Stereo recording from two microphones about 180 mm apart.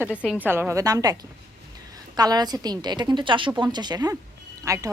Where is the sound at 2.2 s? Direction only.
20° right (ahead or behind).